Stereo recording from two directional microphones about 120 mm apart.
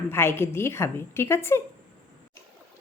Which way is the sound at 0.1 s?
20° left (ahead or behind).